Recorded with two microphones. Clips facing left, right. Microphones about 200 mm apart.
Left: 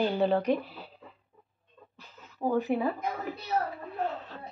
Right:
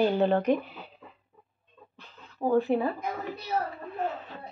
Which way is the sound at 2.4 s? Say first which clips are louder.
Right 3 dB; 10° right (ahead or behind).